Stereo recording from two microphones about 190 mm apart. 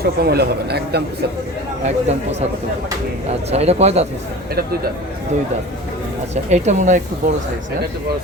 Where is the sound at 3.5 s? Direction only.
35° right (ahead or behind).